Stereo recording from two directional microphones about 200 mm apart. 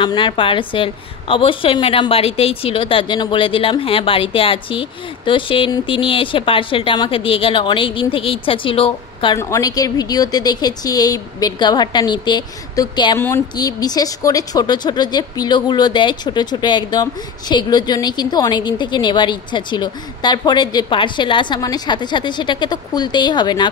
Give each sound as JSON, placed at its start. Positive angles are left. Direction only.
{"t": 0.0, "sound": "speech", "side_deg": 25}